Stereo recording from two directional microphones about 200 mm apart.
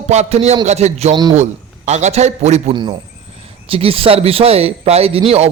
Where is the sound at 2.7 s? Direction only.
20° right (ahead or behind).